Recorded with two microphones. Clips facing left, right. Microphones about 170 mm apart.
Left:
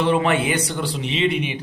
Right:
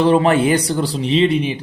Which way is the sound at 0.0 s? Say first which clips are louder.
Right 6 dB; 35° right (ahead or behind).